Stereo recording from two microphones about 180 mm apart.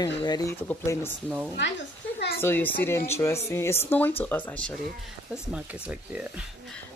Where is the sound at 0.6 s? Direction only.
10° left (ahead or behind).